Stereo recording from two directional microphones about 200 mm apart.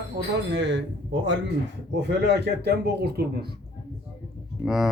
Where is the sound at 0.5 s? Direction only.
65° right (ahead or behind).